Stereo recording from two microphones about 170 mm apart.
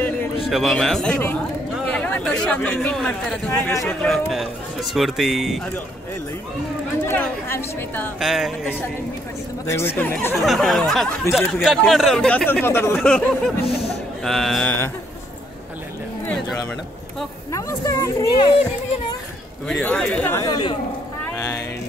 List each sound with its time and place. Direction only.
0.5 s speech: centre (ahead or behind)
7.1 s speech: 15° left (ahead or behind)
8.2 s speech: centre (ahead or behind)
9.7 s speech: 15° left (ahead or behind)
10.3 s speech: centre (ahead or behind)
14.2 s speech: centre (ahead or behind)
17.5 s speech: 20° left (ahead or behind)
19.7 s speech: 5° left (ahead or behind)
20.4 s speech: 25° left (ahead or behind)